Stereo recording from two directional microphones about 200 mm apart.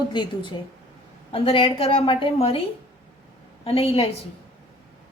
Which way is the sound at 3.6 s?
30° left (ahead or behind).